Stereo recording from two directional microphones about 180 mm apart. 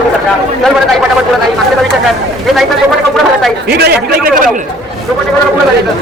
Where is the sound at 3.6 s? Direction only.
65° right (ahead or behind).